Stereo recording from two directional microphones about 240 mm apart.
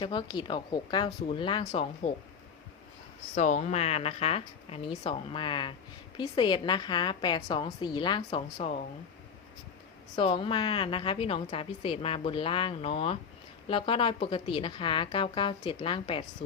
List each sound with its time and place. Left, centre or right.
0.0 s a woman's voice: centre
3.3 s a woman's voice: left
10.2 s a woman's voice: left